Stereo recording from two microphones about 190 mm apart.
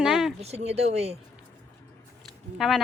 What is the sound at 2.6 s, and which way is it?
Speech, centre (ahead or behind).